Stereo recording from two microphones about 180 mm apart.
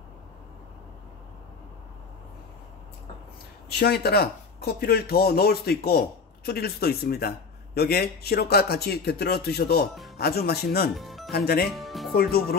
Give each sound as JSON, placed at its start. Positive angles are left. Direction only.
{"t": 3.6, "sound": "speech", "side_deg": 60}
{"t": 11.0, "sound": "music", "side_deg": 0}
{"t": 11.3, "sound": "speech", "side_deg": 60}
{"t": 11.7, "sound": "music", "side_deg": 0}
{"t": 12.1, "sound": "speech", "side_deg": 60}